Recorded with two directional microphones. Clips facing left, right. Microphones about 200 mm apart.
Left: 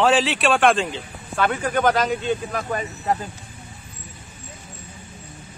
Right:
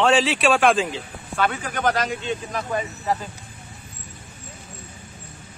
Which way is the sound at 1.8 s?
50° left (ahead or behind).